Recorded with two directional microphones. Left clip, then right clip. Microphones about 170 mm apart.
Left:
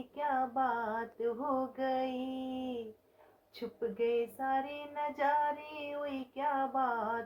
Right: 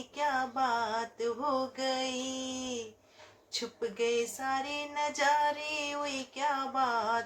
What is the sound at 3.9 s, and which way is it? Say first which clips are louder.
Child singing: right 2 dB; 15° right (ahead or behind).